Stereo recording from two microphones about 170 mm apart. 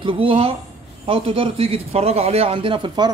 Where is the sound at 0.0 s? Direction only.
30° right (ahead or behind).